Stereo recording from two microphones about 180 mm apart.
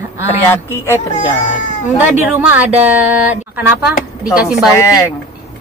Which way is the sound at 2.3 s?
10° right (ahead or behind).